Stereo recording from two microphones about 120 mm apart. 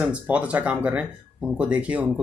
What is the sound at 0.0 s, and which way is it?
Speech, 10° right (ahead or behind).